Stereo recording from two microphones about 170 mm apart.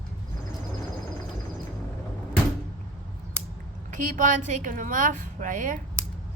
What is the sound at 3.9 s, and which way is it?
A woman's voice, 50° right (ahead or behind).